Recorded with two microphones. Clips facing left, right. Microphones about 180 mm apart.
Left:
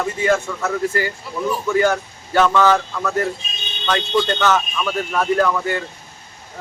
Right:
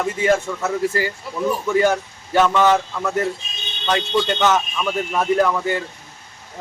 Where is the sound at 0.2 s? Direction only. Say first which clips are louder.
Even; 25° right (ahead or behind).